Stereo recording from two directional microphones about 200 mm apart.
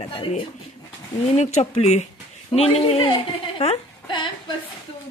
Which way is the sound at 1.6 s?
30° left (ahead or behind).